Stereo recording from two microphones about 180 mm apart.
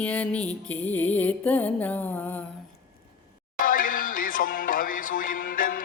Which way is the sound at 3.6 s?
50° left (ahead or behind).